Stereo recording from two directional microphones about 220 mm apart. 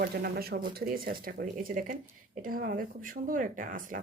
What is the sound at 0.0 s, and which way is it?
Speech, 45° right (ahead or behind).